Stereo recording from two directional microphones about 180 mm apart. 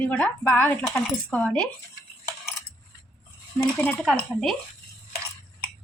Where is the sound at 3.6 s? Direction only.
5° left (ahead or behind).